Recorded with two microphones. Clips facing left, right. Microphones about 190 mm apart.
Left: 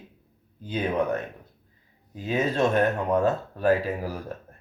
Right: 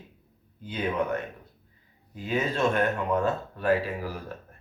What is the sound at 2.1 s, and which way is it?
Speech, 40° left (ahead or behind).